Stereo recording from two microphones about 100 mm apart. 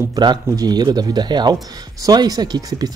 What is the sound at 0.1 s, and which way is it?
A man's voice, 45° right (ahead or behind).